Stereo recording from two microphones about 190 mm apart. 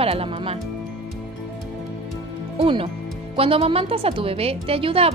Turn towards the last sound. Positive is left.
turn(degrees=-30)  # may be behind; listen again after turning